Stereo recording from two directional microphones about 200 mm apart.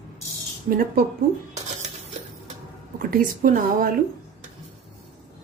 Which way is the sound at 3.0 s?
45° right (ahead or behind).